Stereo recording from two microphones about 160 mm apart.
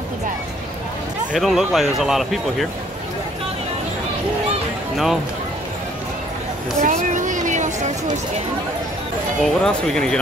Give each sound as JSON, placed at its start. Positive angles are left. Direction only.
{"t": 1.3, "sound": "speech", "side_deg": 0}
{"t": 4.9, "sound": "speech", "side_deg": 0}
{"t": 6.8, "sound": "a sound", "side_deg": -50}
{"t": 9.4, "sound": "speech", "side_deg": 5}